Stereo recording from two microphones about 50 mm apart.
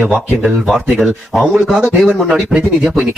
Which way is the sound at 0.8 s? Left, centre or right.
Centre.